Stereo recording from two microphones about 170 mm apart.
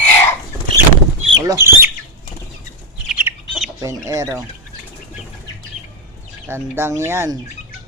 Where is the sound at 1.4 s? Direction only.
15° right (ahead or behind).